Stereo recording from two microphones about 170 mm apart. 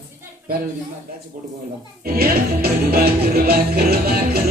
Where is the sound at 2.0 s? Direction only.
65° right (ahead or behind).